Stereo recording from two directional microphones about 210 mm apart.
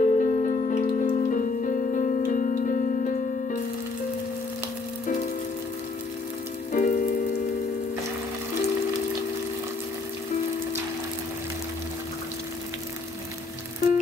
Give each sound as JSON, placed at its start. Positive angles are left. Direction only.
{"t": 0.0, "sound": "music", "side_deg": 40}
{"t": 6.7, "sound": "rain on surface", "side_deg": 40}